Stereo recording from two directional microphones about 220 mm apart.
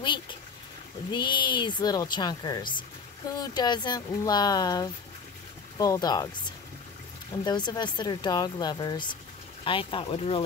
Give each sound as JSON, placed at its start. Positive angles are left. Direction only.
{"t": 1.1, "sound": "speech", "side_deg": 20}
{"t": 7.4, "sound": "speech", "side_deg": 20}